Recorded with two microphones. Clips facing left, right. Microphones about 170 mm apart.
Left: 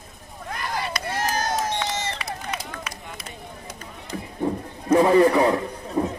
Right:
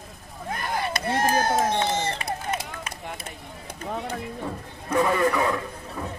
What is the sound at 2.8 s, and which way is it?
Run, 50° right (ahead or behind).